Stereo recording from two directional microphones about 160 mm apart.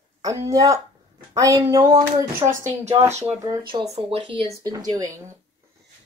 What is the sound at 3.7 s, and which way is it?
Speech, 35° right (ahead or behind).